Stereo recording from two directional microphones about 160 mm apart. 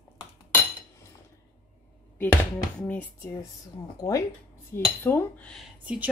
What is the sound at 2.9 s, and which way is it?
Speech, 10° left (ahead or behind).